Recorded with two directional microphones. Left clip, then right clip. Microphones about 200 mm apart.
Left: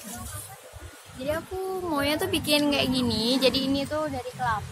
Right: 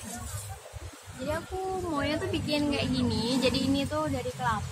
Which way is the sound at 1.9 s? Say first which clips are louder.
Left 7 dB; 60° left (ahead or behind).